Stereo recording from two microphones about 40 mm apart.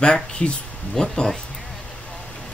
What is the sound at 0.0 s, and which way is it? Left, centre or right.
Speech, left.